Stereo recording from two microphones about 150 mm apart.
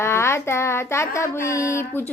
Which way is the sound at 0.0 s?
15° left (ahead or behind).